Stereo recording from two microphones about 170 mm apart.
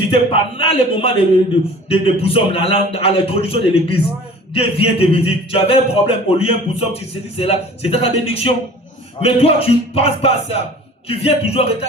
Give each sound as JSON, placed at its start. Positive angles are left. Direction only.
{"t": 0.1, "sound": "a man's voice", "side_deg": 35}